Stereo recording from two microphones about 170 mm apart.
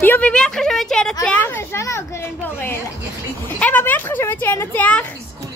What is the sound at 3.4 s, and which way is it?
A woman's voice, 10° left (ahead or behind).